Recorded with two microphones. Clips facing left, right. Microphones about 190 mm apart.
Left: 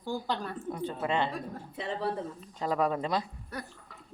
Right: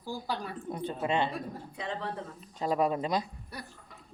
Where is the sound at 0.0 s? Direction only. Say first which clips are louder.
Left 2 dB; 10° right (ahead or behind).